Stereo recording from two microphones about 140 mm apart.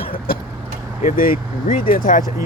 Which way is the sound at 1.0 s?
85° left.